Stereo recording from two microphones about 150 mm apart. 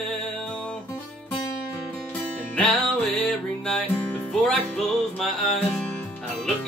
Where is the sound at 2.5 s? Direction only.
5° left (ahead or behind).